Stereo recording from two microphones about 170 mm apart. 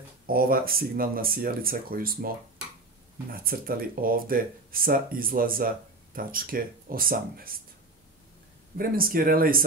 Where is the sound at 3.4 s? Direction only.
60° right (ahead or behind).